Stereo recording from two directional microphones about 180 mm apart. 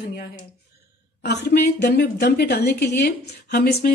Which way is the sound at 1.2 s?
65° left (ahead or behind).